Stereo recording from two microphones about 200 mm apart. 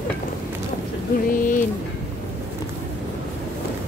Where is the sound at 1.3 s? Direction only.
40° left (ahead or behind).